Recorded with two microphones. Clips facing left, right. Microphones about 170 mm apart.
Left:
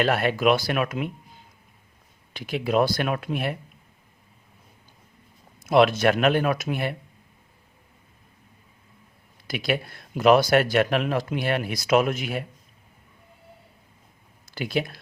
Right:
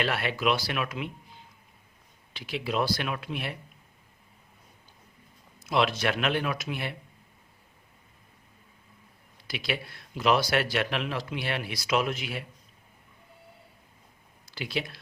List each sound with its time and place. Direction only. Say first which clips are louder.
0.0 s speech: left 7 dB; 45° left (ahead or behind)
2.3 s speech: left 7 dB; 50° left (ahead or behind)
5.5 s speech: left 8 dB; 50° left (ahead or behind)
9.5 s speech: left 7 dB; 50° left (ahead or behind)
14.5 s speech: left 6 dB; 50° left (ahead or behind)